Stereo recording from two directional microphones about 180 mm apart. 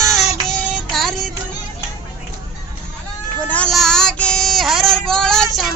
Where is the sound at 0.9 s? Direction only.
Centre (ahead or behind).